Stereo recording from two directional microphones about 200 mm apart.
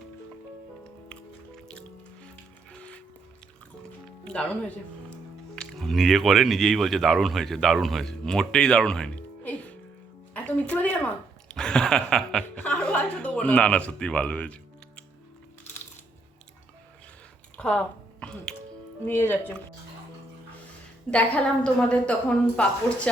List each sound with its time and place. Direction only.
2.7 s music: 5° left (ahead or behind)
4.2 s music: 5° left (ahead or behind)
5.5 s speech: centre (ahead or behind)
10.3 s a sound: 5° left (ahead or behind)
17.6 s squish: 5° left (ahead or behind)
19.0 s speech: 10° left (ahead or behind)
21.1 s a woman's voice: 5° left (ahead or behind)